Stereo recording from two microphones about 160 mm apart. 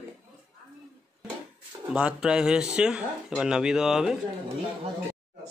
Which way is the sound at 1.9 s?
5° right (ahead or behind).